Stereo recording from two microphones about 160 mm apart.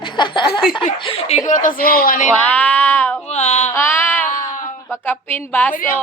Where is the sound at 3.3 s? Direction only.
45° left (ahead or behind).